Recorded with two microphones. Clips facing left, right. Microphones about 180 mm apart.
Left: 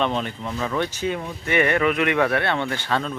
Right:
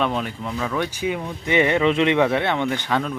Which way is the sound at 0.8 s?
10° right (ahead or behind).